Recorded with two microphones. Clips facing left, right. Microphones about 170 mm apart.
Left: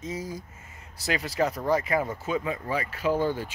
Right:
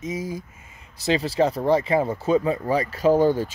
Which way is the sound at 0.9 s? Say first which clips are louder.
Right 6 dB; 25° right (ahead or behind).